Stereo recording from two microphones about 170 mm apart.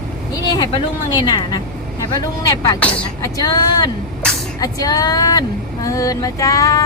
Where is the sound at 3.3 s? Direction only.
20° left (ahead or behind).